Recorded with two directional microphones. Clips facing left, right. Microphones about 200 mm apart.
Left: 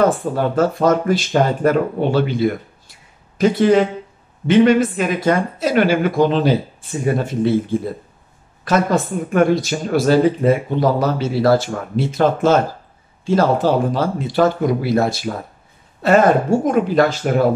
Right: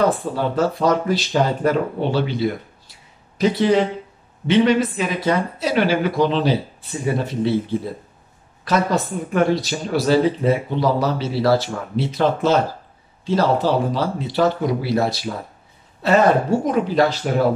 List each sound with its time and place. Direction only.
0.2 s speech: 50° left (ahead or behind)
8.6 s speech: 50° left (ahead or behind)